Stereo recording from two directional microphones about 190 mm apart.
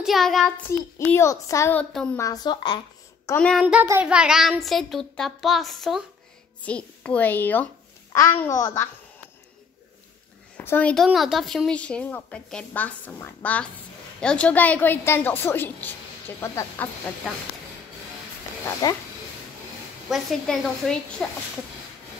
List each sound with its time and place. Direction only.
0.0 s child singing: centre (ahead or behind)
0.7 s a woman's voice: 10° left (ahead or behind)
2.2 s a woman's voice: 20° left (ahead or behind)
3.3 s a woman's voice: 5° left (ahead or behind)
3.6 s a woman's voice: 10° right (ahead or behind); by 8.8 s 15° left (ahead or behind)
10.6 s a woman's voice: 10° left (ahead or behind)
18.8 s a woman's voice: 20° left (ahead or behind)
20.1 s a woman's voice: centre (ahead or behind)